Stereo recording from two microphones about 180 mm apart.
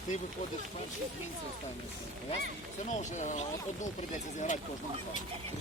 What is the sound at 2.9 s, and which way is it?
Speech, 45° left (ahead or behind).